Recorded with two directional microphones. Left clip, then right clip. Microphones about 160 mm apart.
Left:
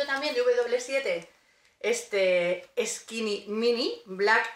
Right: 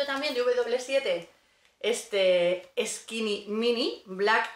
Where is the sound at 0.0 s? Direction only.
10° left (ahead or behind).